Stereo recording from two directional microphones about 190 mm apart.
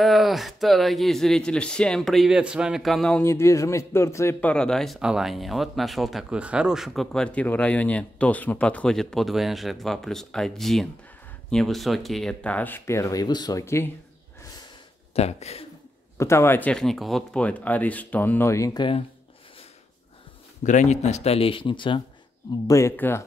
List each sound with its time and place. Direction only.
0.0 s speech: centre (ahead or behind); by 13.8 s 15° left (ahead or behind)
15.1 s speech: 35° left (ahead or behind)
16.2 s speech: 15° left (ahead or behind)
20.6 s speech: 40° left (ahead or behind)
22.7 s speech: 15° left (ahead or behind)